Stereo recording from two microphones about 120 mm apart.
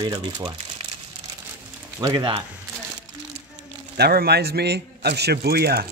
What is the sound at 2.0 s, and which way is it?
Speech, 30° right (ahead or behind).